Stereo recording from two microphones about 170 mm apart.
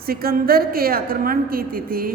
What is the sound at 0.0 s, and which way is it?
A woman's voice, 60° right (ahead or behind).